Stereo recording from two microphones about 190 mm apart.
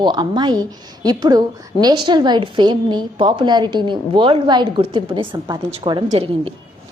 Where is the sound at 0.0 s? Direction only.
20° right (ahead or behind).